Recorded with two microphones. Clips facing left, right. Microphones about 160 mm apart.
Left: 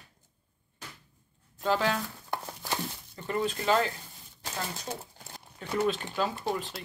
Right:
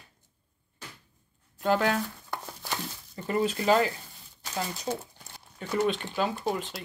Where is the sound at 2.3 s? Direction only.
15° left (ahead or behind).